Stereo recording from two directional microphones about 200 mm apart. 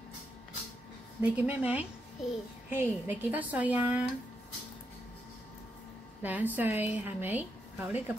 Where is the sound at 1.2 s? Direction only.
10° right (ahead or behind).